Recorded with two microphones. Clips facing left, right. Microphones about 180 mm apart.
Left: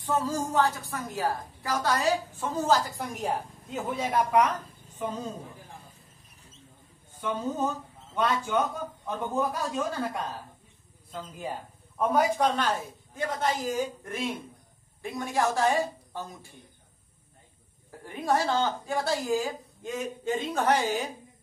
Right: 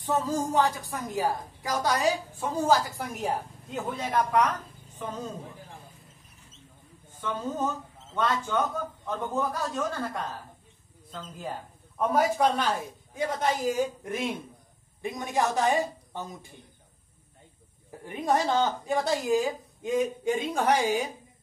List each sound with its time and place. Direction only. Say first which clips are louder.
0.0 s a woman's voice: right 1 dB; 20° right (ahead or behind); by 5.2 s 10° left (ahead or behind)
7.2 s a man's voice: left 1 dB; 10° left (ahead or behind)
12.0 s a woman's voice: even; centre (ahead or behind); by 16.3 s 20° right (ahead or behind)
18.0 s a woman's voice: right 1 dB; 20° right (ahead or behind)